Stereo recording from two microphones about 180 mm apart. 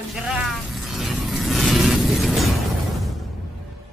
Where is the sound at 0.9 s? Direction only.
Centre (ahead or behind).